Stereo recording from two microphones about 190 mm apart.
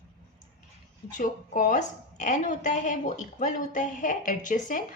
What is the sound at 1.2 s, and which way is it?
A woman's voice, 45° left (ahead or behind).